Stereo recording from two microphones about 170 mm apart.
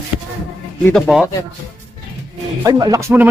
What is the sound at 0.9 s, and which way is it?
Music, centre (ahead or behind).